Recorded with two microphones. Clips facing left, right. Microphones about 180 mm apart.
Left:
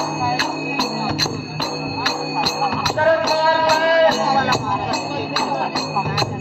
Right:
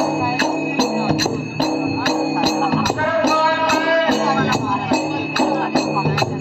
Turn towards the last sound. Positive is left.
turn(degrees=-50)  # may be behind; listen again after turning